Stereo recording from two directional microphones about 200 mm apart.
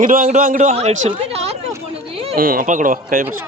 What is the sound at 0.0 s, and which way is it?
A man's voice, 40° right (ahead or behind).